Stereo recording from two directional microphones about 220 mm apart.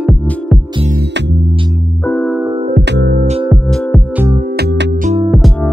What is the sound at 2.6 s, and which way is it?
Music, 45° right (ahead or behind).